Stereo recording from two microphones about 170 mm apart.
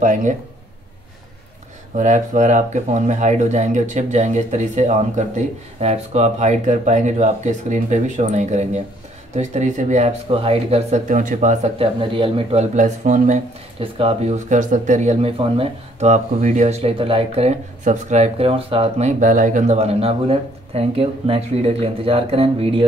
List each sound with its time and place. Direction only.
0.0 s speech: 45° right (ahead or behind)
2.0 s speech: 45° right (ahead or behind)